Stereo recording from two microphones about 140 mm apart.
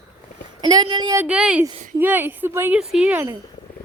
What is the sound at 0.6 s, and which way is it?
Speech, 30° right (ahead or behind).